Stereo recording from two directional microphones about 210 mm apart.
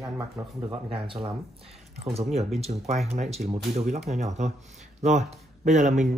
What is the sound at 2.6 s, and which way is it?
A man's voice, 30° right (ahead or behind).